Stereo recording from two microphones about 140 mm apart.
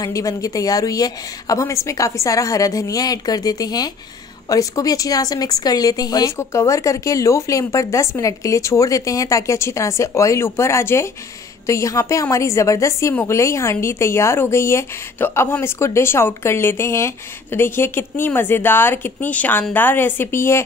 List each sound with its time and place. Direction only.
0.0 s a woman's voice: 25° left (ahead or behind)